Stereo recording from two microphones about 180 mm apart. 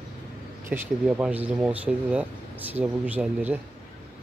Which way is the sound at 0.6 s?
10° right (ahead or behind).